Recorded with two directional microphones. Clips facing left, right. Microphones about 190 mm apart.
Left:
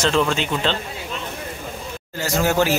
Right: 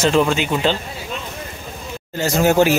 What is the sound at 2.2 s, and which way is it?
Speech, 20° right (ahead or behind).